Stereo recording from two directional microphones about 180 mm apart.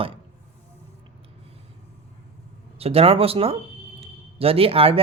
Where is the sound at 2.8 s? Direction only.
35° right (ahead or behind).